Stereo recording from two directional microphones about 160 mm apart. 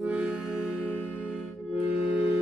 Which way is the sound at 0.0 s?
5° right (ahead or behind).